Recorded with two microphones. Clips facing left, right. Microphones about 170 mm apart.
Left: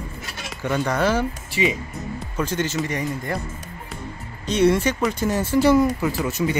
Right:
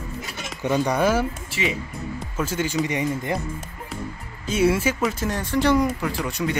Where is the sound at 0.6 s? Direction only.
15° right (ahead or behind).